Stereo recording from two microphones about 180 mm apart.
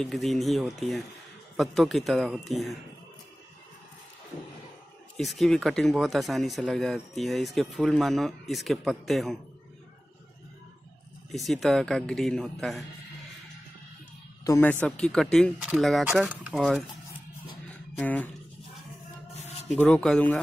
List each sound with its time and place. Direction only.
0.0 s speech: centre (ahead or behind)
5.1 s speech: centre (ahead or behind)
11.3 s speech: centre (ahead or behind)
14.4 s speech: 15° left (ahead or behind); by 16.3 s 10° right (ahead or behind)
16.3 s speech: centre (ahead or behind)
17.9 s speech: 10° left (ahead or behind)
19.4 s a sound: 35° left (ahead or behind)
19.7 s speech: 5° left (ahead or behind)